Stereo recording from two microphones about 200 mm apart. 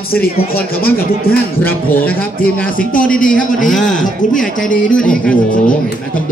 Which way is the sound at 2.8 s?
45° left (ahead or behind).